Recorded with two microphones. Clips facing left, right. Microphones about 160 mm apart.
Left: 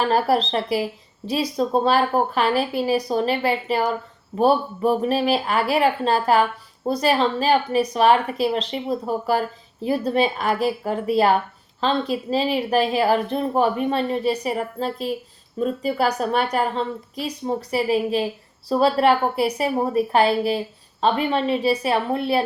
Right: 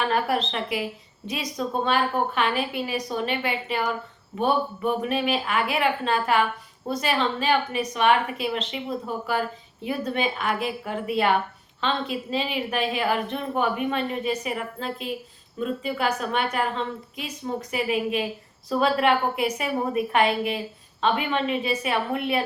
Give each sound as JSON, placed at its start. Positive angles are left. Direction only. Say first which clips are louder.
{"t": 0.0, "sound": "speech", "louder": "left 5 dB", "side_deg": 35}